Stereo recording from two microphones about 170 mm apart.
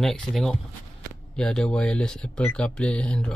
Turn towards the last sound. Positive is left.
turn(degrees=5)  # may be behind; listen again after turning